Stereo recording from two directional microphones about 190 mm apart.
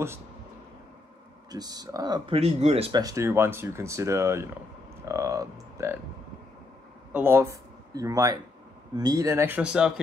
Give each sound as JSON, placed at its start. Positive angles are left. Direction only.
{"t": 1.5, "sound": "speech", "side_deg": -20}
{"t": 2.3, "sound": "speech", "side_deg": -35}
{"t": 3.0, "sound": "speech", "side_deg": -15}
{"t": 7.1, "sound": "speech", "side_deg": -10}